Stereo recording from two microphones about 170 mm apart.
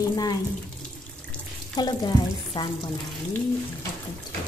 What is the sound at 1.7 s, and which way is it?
Speech, 25° left (ahead or behind).